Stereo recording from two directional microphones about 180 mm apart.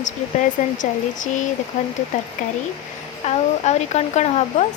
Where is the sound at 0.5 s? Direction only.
45° left (ahead or behind).